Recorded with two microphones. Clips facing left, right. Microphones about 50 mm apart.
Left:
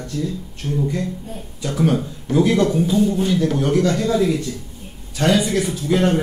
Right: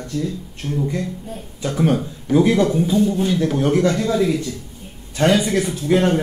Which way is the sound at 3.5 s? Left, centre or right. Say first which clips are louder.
Right 1 dB; right.